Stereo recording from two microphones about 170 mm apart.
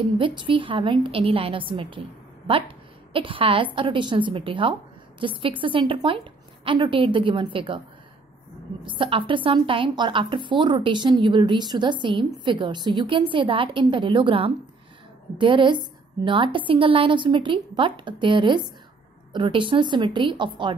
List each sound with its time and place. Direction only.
0.2 s a woman's voice: 30° right (ahead or behind)
8.8 s a woman's voice: 30° right (ahead or behind)